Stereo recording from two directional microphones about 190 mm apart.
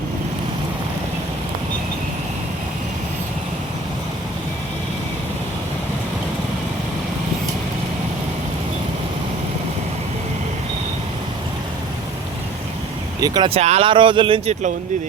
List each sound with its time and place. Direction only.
13.1 s speech: 20° right (ahead or behind)